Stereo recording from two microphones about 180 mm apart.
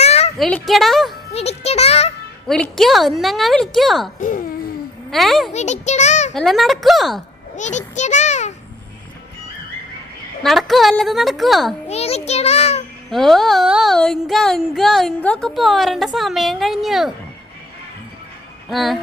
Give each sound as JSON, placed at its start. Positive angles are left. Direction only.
{"t": 0.0, "sound": "a sound", "side_deg": 35}
{"t": 0.3, "sound": "speech", "side_deg": 5}
{"t": 1.3, "sound": "music", "side_deg": 35}
{"t": 2.5, "sound": "speech", "side_deg": 0}
{"t": 4.2, "sound": "a sound", "side_deg": 50}
{"t": 5.1, "sound": "speech", "side_deg": 0}
{"t": 5.5, "sound": "a child's voice", "side_deg": 40}
{"t": 6.3, "sound": "speech", "side_deg": 0}
{"t": 7.5, "sound": "a sound", "side_deg": 40}
{"t": 10.4, "sound": "speech", "side_deg": 0}
{"t": 11.9, "sound": "a sound", "side_deg": 35}
{"t": 13.1, "sound": "speech", "side_deg": 0}
{"t": 18.7, "sound": "speech", "side_deg": 0}